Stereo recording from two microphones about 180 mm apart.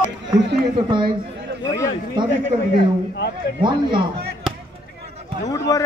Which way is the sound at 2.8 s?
65° left (ahead or behind).